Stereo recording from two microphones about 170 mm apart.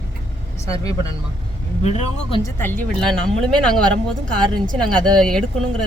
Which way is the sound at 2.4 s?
10° left (ahead or behind).